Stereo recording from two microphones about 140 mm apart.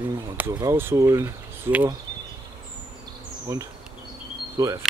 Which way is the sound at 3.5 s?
20° right (ahead or behind).